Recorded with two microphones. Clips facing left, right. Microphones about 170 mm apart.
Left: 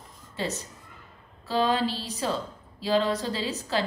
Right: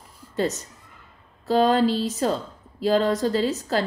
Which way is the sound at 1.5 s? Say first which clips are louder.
Right 6 dB; 45° right (ahead or behind).